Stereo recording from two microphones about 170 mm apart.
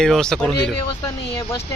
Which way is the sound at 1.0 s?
20° left (ahead or behind).